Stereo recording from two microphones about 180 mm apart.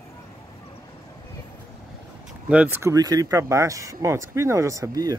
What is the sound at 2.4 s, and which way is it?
Speech, 10° right (ahead or behind).